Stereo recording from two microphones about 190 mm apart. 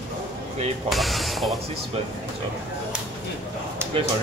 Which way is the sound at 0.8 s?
Centre (ahead or behind).